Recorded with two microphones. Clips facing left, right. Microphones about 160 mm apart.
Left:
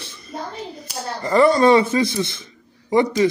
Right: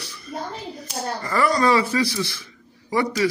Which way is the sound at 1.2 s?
25° left (ahead or behind).